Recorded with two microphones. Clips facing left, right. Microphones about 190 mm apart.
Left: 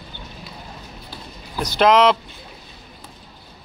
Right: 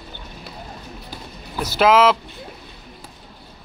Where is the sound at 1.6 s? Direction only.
5° right (ahead or behind).